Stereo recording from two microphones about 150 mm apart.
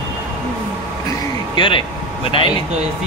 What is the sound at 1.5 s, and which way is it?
Speech, 35° left (ahead or behind).